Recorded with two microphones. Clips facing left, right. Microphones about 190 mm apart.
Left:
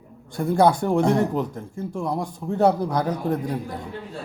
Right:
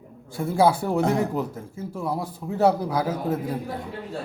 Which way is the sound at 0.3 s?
5° right (ahead or behind).